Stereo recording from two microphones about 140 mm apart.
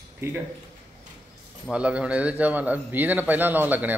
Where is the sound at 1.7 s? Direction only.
10° right (ahead or behind).